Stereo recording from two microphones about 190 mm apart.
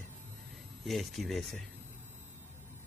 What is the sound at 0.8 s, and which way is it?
Speech, centre (ahead or behind).